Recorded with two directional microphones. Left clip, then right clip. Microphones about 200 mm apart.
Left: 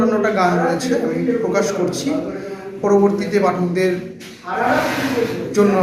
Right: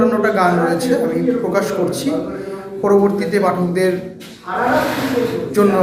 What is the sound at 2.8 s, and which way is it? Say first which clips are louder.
A man's voice: right 1 dB; 5° right (ahead or behind).